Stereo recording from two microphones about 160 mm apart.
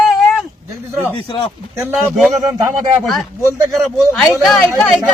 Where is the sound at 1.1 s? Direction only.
30° left (ahead or behind).